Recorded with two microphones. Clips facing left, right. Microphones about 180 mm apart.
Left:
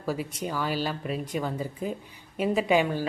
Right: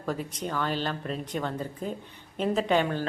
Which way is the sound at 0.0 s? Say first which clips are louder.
Left 1 dB; 5° left (ahead or behind).